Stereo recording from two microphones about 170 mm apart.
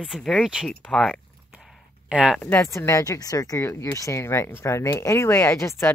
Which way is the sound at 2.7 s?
20° left (ahead or behind).